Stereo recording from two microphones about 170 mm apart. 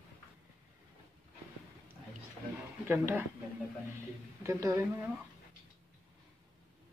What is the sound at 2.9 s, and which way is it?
Speech, 15° right (ahead or behind).